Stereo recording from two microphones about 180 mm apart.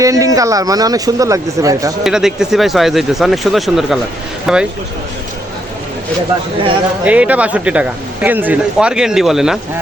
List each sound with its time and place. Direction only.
0.0 s speech: 20° right (ahead or behind)
2.0 s speech: 5° right (ahead or behind)
7.0 s speech: 10° right (ahead or behind)